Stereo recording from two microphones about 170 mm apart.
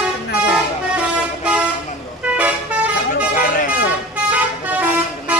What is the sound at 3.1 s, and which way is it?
Vehicle, 55° left (ahead or behind).